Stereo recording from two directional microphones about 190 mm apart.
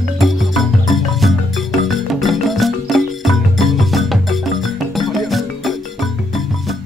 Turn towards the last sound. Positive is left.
turn(degrees=0)  # may be behind; listen again after turning